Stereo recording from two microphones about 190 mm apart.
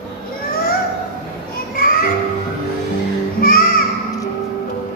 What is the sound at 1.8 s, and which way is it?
Music, 50° left (ahead or behind).